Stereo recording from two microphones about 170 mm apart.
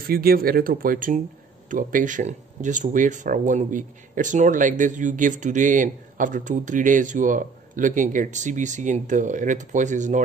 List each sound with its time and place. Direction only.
0.0 s speech: 60° right (ahead or behind)